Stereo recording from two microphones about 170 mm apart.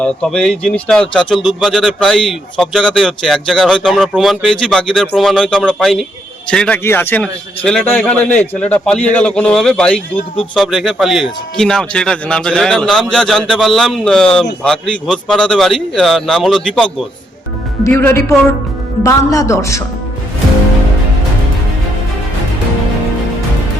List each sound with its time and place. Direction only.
0.0 s a man's voice: 5° left (ahead or behind)